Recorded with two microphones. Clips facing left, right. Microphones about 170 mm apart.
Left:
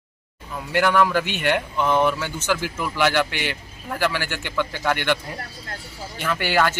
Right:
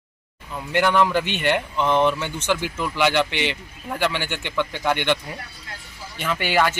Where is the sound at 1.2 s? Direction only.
10° left (ahead or behind).